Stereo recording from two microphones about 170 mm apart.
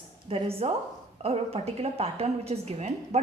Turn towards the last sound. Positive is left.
turn(degrees=-40)  # may be behind; listen again after turning